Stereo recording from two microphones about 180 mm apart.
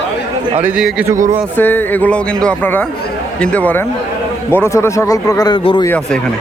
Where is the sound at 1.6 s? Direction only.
10° left (ahead or behind); by 5.9 s 25° left (ahead or behind).